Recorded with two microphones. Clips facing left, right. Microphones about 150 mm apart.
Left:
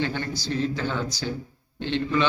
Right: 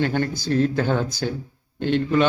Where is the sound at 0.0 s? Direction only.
50° right (ahead or behind).